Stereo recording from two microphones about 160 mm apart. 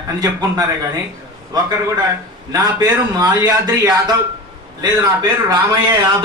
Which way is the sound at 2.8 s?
25° right (ahead or behind).